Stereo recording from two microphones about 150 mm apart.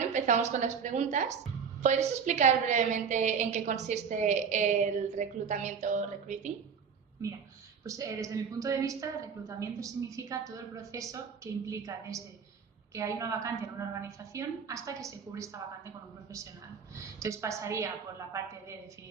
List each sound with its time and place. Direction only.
0.0 s a woman's voice: 55° right (ahead or behind)
7.9 s a woman's voice: 20° right (ahead or behind)
17.2 s a woman's voice: 20° right (ahead or behind)